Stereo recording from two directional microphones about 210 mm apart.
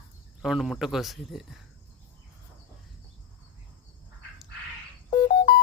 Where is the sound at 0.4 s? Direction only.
Centre (ahead or behind).